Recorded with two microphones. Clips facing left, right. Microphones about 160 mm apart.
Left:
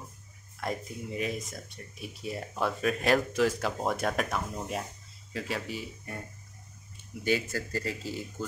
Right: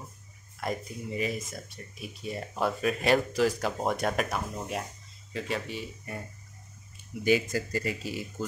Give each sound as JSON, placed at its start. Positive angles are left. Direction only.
{"t": 0.6, "sound": "speech", "side_deg": 0}
{"t": 7.5, "sound": "speech", "side_deg": -15}